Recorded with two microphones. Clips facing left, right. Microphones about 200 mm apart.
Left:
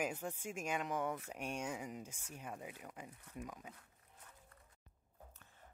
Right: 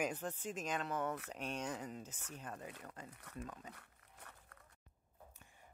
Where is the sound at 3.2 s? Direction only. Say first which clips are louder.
Right 1 dB; 75° right (ahead or behind).